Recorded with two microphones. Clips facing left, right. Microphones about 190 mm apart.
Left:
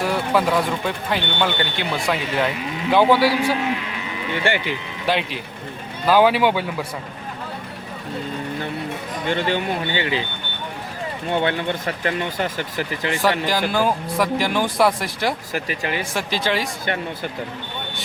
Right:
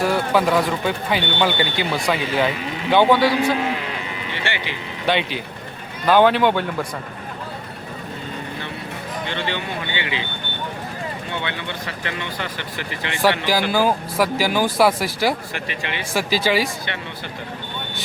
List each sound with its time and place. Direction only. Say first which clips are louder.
0.0 s a man's voice: right 1 dB; centre (ahead or behind)
5.0 s speech: right 1 dB; centre (ahead or behind)
9.2 s speech: left 6 dB; 45° left (ahead or behind)
11.3 s speech: left 12 dB; 45° left (ahead or behind)
13.5 s speech: right 1 dB; 5° right (ahead or behind)
15.5 s speech: left 4 dB; 40° left (ahead or behind)
16.1 s speech: right 7 dB; 5° right (ahead or behind)